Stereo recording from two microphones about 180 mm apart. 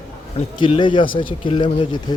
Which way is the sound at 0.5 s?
25° left (ahead or behind).